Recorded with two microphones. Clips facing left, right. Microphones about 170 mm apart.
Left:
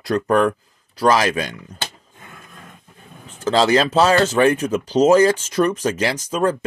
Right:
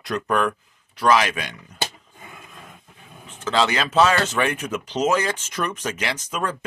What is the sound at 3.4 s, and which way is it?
Speech, 35° left (ahead or behind).